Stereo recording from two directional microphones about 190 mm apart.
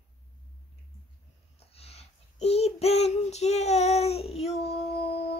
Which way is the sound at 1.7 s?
30° left (ahead or behind).